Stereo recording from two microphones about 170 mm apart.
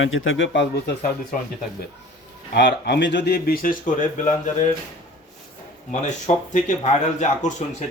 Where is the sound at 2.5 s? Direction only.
75° left (ahead or behind); by 4.3 s 50° left (ahead or behind).